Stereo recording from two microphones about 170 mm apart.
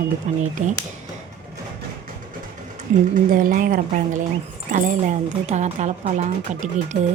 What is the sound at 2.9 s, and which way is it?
A woman's voice, 45° right (ahead or behind).